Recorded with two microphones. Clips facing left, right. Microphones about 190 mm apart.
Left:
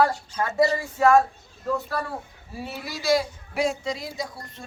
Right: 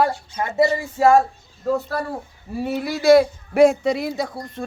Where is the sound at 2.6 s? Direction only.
55° right (ahead or behind).